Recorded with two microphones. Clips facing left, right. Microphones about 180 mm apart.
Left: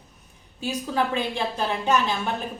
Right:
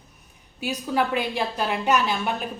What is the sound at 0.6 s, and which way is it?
Speech, 10° right (ahead or behind).